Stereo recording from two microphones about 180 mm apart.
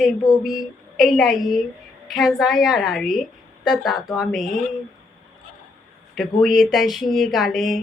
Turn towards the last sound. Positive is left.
turn(degrees=0)  # may be behind; listen again after turning